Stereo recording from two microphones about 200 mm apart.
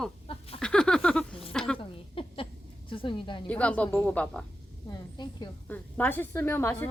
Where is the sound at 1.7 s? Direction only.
25° left (ahead or behind).